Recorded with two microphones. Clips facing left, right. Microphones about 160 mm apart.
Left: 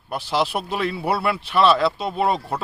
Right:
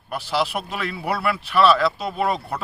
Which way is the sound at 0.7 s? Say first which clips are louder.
Left 3 dB; 35° left (ahead or behind).